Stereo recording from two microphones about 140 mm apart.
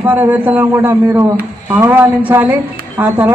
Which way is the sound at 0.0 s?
10° right (ahead or behind).